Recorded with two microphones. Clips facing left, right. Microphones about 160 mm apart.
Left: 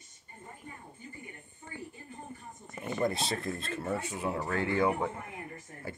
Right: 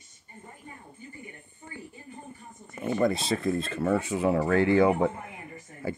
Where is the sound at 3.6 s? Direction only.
90° right.